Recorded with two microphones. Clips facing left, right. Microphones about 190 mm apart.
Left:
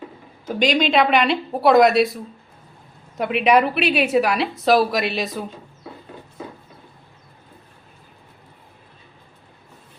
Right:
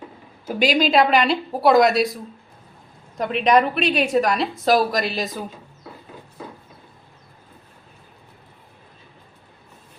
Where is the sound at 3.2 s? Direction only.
5° left (ahead or behind).